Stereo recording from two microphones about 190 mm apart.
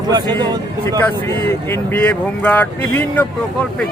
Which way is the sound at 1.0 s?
10° left (ahead or behind).